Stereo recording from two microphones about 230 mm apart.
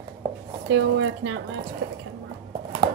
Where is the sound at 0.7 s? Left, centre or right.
Right.